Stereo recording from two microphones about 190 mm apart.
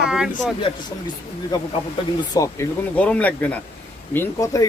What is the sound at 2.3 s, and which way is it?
Speech, 15° left (ahead or behind).